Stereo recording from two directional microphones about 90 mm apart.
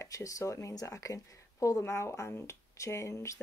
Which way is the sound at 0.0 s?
40° left (ahead or behind).